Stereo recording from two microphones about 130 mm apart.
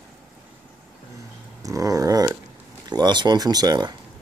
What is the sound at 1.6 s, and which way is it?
Dog, 25° right (ahead or behind).